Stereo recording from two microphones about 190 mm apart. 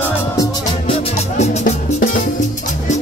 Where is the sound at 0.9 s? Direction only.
40° left (ahead or behind).